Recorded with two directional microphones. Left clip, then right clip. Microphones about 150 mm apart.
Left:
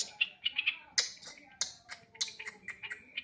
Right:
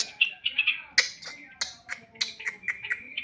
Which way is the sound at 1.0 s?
10° right (ahead or behind).